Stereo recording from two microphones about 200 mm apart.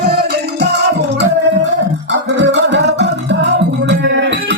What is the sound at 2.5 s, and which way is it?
Music, 60° right (ahead or behind).